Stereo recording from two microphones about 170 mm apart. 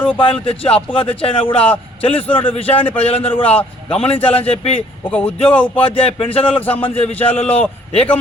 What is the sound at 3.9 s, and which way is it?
Speech, 35° left (ahead or behind).